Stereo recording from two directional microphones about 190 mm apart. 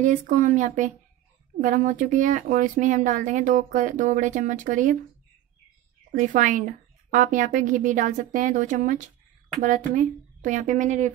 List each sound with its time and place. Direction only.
0.0 s speech: 40° right (ahead or behind)
6.1 s speech: 40° right (ahead or behind)